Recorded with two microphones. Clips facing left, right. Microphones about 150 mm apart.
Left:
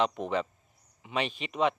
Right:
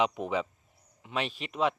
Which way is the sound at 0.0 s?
5° right (ahead or behind).